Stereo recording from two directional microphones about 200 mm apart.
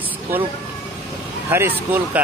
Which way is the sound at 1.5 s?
10° right (ahead or behind).